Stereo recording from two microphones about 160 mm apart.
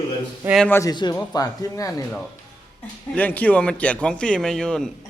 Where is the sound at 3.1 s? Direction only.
10° left (ahead or behind).